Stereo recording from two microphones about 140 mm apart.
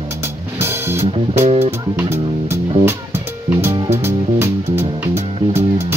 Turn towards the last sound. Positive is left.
turn(degrees=-20)  # may be behind; listen again after turning